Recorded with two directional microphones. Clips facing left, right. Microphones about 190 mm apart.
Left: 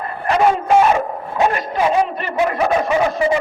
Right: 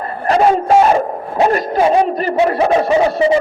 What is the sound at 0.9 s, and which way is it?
Dog, 35° right (ahead or behind).